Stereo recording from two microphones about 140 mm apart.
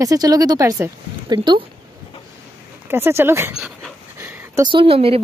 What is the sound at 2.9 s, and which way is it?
Speech, 15° right (ahead or behind).